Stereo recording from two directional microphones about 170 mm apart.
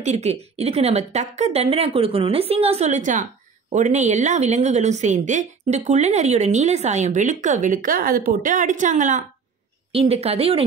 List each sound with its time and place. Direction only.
0.0 s a woman's voice: 40° right (ahead or behind)
9.9 s a woman's voice: 35° right (ahead or behind)